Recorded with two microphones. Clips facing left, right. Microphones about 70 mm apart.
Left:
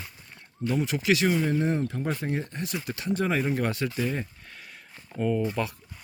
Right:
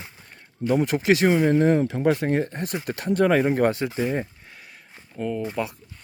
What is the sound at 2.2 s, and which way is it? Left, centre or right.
Speech, right.